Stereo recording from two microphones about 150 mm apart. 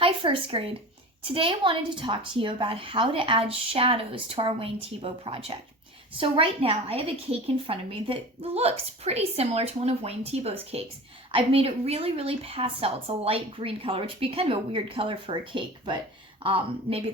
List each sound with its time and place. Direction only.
0.0 s a woman's voice: 35° right (ahead or behind)